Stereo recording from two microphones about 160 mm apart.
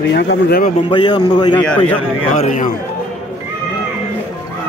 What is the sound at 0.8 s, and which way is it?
Speech, 30° left (ahead or behind).